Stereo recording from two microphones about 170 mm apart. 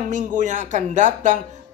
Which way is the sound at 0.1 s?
50° right (ahead or behind).